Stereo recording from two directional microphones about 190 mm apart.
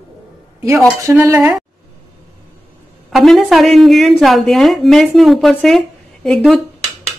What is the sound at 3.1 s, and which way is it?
A woman's voice, centre (ahead or behind).